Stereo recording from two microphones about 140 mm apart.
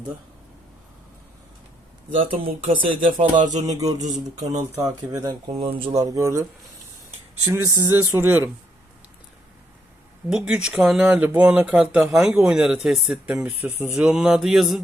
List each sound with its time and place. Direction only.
2.1 s speech: 40° right (ahead or behind)
3.3 s speech: 60° right (ahead or behind)
4.4 s speech: 25° right (ahead or behind)
5.5 s speech: 45° right (ahead or behind)
6.0 s speech: 25° right (ahead or behind)
7.4 s speech: 20° right (ahead or behind)
10.2 s speech: 5° right (ahead or behind)